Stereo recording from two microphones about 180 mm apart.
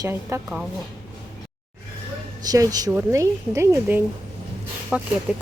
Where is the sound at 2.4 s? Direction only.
20° right (ahead or behind).